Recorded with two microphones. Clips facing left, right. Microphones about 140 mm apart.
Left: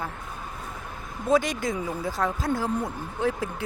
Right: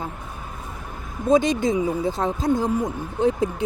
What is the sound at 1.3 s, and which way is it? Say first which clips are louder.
Speech: right 5 dB; 20° right (ahead or behind).